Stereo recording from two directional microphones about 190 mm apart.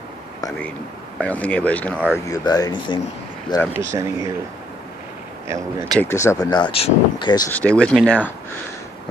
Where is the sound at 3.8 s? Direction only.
15° right (ahead or behind).